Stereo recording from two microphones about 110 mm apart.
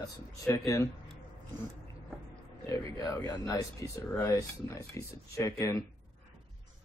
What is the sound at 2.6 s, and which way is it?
Speech, 30° left (ahead or behind).